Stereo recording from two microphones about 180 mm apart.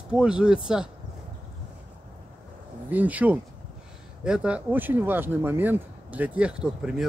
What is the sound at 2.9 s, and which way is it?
Speech, 10° right (ahead or behind).